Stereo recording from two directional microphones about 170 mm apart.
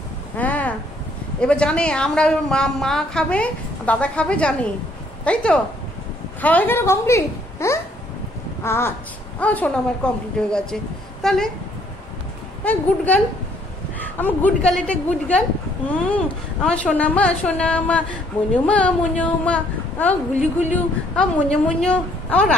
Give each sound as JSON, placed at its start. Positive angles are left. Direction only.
{"t": 0.4, "sound": "a sound", "side_deg": 10}
{"t": 1.4, "sound": "a woman's voice", "side_deg": 5}
{"t": 12.6, "sound": "a woman's voice", "side_deg": 10}